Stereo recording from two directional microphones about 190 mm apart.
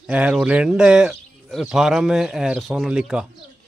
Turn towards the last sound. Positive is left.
turn(degrees=-5)  # may be behind; listen again after turning